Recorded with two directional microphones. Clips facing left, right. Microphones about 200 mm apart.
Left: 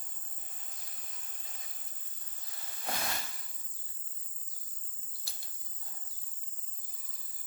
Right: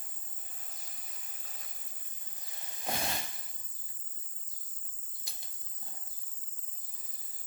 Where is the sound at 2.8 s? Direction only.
20° right (ahead or behind).